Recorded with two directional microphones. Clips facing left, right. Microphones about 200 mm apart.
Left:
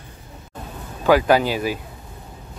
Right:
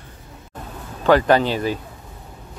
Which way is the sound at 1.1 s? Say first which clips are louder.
Right 1 dB; 10° left (ahead or behind).